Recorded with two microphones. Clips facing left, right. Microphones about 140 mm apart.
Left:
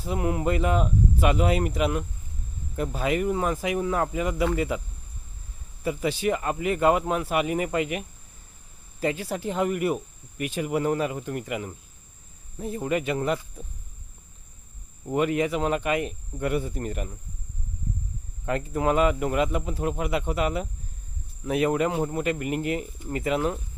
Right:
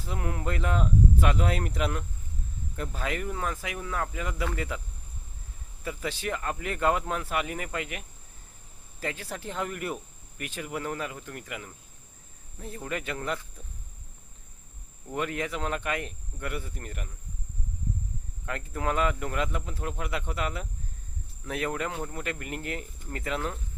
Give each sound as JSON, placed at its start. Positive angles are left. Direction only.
{"t": 0.0, "sound": "speech", "side_deg": 15}
{"t": 5.8, "sound": "speech", "side_deg": 15}
{"t": 15.0, "sound": "speech", "side_deg": 15}
{"t": 18.4, "sound": "speech", "side_deg": 20}